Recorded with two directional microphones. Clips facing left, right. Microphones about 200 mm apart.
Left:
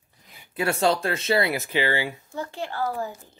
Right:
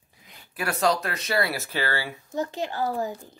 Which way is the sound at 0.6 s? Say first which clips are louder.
Left 2 dB; 25° left (ahead or behind).